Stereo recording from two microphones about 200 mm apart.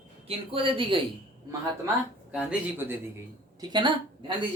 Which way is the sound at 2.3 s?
5° right (ahead or behind).